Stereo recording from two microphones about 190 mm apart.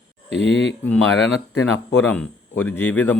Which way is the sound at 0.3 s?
70° left (ahead or behind).